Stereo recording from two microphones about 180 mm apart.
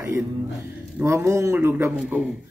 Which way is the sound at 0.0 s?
15° right (ahead or behind).